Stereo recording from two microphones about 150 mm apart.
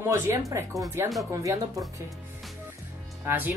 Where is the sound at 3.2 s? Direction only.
15° right (ahead or behind).